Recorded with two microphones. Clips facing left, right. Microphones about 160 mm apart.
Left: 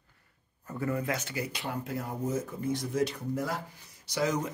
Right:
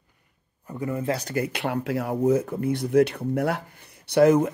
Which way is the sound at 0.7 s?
20° right (ahead or behind).